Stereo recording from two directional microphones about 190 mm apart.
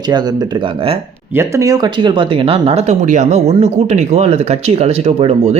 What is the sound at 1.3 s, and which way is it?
Speech, 15° right (ahead or behind).